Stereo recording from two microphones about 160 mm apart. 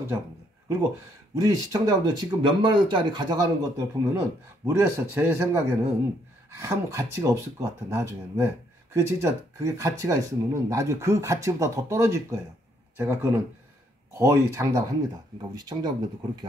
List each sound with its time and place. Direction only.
1.3 s speech: 20° right (ahead or behind)